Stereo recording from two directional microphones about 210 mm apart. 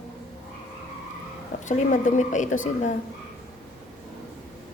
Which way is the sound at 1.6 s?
35° left (ahead or behind).